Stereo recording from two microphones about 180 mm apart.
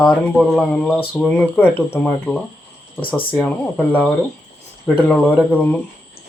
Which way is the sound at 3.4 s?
5° left (ahead or behind).